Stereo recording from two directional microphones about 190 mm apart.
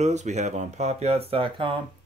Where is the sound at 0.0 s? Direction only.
35° right (ahead or behind).